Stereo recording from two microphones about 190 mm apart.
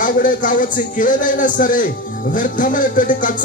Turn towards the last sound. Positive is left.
turn(degrees=45)  # may be behind; listen again after turning